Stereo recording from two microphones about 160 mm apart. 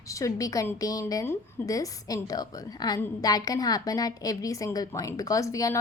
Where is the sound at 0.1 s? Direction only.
20° left (ahead or behind).